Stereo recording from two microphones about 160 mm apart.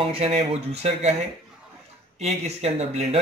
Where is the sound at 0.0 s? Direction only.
40° right (ahead or behind).